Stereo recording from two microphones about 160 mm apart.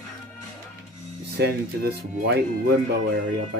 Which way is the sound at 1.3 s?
90° right.